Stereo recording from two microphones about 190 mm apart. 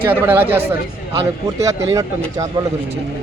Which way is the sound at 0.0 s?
10° right (ahead or behind).